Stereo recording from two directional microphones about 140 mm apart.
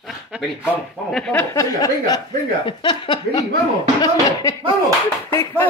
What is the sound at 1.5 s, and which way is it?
Speech, 25° left (ahead or behind).